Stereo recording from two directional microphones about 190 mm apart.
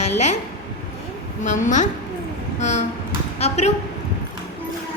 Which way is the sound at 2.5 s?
35° left (ahead or behind).